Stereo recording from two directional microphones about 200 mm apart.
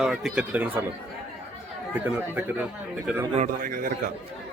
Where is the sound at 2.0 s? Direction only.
10° right (ahead or behind).